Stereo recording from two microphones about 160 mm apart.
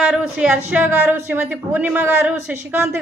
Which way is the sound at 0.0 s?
5° right (ahead or behind).